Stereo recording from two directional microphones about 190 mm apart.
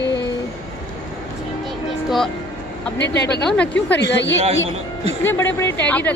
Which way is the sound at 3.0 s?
65° left (ahead or behind).